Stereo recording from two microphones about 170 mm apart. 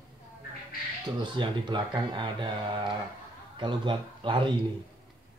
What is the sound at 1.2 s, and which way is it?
Speech, 25° right (ahead or behind).